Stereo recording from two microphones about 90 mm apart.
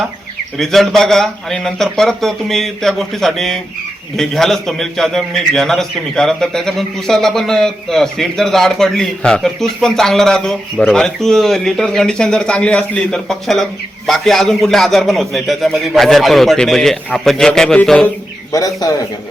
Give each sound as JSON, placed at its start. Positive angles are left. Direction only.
{"t": 0.5, "sound": "a man's voice", "side_deg": 5}
{"t": 18.5, "sound": "a man's voice", "side_deg": 40}